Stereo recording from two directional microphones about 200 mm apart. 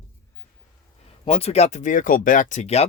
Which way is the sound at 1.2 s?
30° left (ahead or behind).